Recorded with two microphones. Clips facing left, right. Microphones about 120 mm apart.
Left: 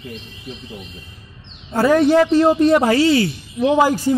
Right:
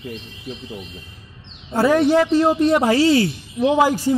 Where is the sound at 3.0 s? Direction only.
30° right (ahead or behind).